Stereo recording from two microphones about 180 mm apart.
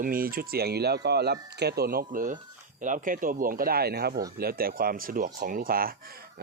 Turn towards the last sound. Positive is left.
turn(degrees=-55)  # may be behind; listen again after turning